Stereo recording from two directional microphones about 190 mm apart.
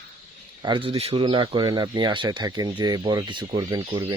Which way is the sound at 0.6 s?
25° right (ahead or behind).